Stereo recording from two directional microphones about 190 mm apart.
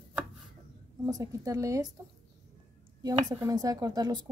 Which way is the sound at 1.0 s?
15° right (ahead or behind).